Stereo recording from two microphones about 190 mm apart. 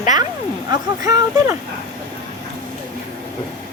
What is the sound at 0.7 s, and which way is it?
Speech, 20° right (ahead or behind).